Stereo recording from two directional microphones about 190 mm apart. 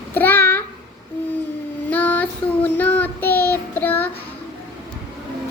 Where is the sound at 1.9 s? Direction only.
10° left (ahead or behind).